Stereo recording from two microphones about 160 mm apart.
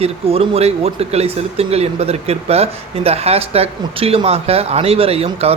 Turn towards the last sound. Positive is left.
turn(degrees=-40)  # may be behind; listen again after turning